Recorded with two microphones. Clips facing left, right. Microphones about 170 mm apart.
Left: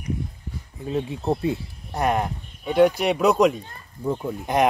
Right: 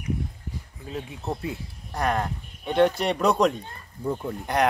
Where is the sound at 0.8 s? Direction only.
30° left (ahead or behind).